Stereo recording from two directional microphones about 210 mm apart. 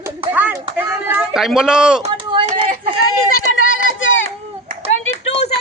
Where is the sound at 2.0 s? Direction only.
25° right (ahead or behind).